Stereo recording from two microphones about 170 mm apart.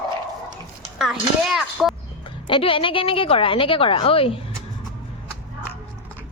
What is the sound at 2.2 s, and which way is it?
Speech, 30° left (ahead or behind).